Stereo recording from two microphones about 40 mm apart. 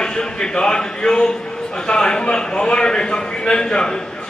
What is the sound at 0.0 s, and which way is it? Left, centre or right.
A man's voice, centre.